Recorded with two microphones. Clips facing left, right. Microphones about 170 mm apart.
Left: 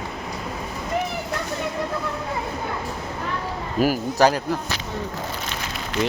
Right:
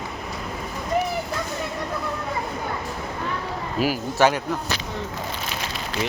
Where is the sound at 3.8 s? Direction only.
40° left (ahead or behind).